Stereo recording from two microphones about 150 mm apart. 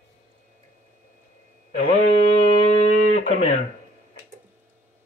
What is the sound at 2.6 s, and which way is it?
Guitar, 50° left (ahead or behind).